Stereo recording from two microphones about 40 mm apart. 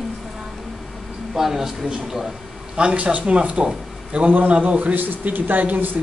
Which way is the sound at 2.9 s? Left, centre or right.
Right.